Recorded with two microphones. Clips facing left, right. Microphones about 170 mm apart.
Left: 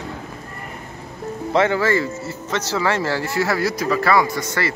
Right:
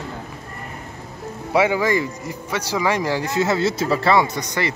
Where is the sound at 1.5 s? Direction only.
10° right (ahead or behind).